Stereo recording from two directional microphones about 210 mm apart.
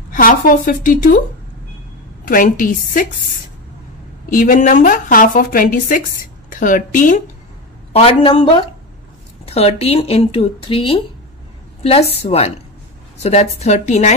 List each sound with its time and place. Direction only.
0.1 s a woman's voice: 40° left (ahead or behind)
2.2 s a woman's voice: 40° left (ahead or behind)
4.3 s a woman's voice: 40° left (ahead or behind)
7.9 s speech: 25° left (ahead or behind)
12.1 s a woman's voice: 30° left (ahead or behind)